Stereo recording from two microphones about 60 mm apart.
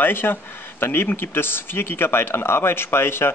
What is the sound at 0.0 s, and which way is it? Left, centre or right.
Speech, left.